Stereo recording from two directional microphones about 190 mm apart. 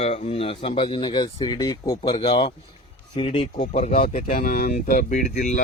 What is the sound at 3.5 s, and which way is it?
Speech, 40° left (ahead or behind).